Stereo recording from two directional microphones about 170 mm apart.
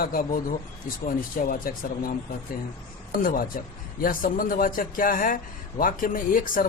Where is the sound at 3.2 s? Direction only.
55° left (ahead or behind).